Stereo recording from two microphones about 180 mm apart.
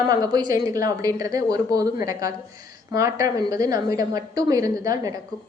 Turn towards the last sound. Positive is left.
turn(degrees=-20)  # may be behind; listen again after turning